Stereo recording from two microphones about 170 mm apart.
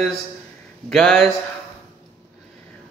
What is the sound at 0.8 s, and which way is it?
Mantra, 5° left (ahead or behind).